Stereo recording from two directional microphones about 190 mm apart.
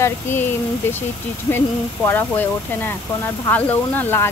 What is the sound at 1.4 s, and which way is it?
Speech, 10° left (ahead or behind).